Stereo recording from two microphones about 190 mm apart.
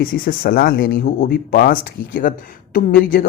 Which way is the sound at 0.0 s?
50° left (ahead or behind).